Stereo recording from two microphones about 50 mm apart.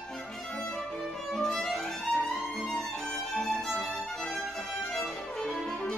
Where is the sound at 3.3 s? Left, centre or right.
Centre.